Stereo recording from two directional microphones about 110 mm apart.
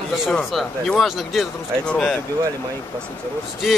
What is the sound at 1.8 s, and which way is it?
Speech, 10° left (ahead or behind).